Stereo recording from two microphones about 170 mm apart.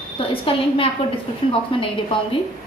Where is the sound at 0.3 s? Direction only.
30° left (ahead or behind).